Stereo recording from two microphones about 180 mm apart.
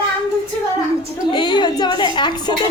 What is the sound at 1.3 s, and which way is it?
A woman's voice, 25° left (ahead or behind).